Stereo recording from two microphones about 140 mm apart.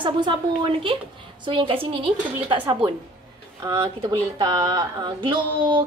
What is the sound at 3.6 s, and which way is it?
Speech, 25° right (ahead or behind).